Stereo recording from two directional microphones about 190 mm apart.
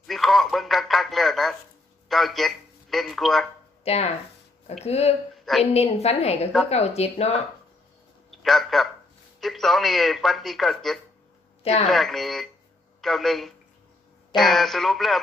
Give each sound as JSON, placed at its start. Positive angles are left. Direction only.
{"t": 0.1, "sound": "speech", "side_deg": 0}
{"t": 3.8, "sound": "a woman's voice", "side_deg": 35}
{"t": 8.3, "sound": "a man's voice", "side_deg": 0}